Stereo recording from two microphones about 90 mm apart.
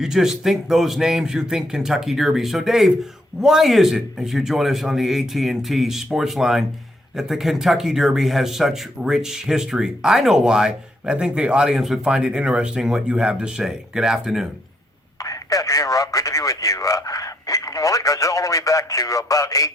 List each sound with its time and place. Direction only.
0.0 s speech: 5° right (ahead or behind)
15.2 s speech: 40° left (ahead or behind)